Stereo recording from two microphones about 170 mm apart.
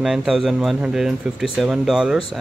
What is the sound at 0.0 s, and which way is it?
Speech, 5° right (ahead or behind).